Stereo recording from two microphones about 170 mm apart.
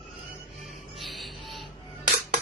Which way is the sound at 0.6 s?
Centre (ahead or behind).